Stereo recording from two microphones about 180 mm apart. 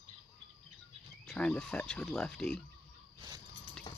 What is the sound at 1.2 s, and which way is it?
Speech, 5° left (ahead or behind).